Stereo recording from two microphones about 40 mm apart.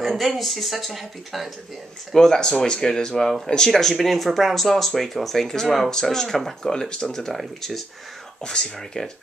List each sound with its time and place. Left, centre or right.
0.0 s speech: centre
2.1 s speech: centre
3.7 s speech: centre
7.3 s speech: centre
8.4 s speech: centre